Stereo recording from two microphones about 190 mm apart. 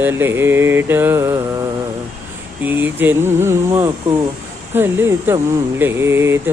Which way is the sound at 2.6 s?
10° right (ahead or behind).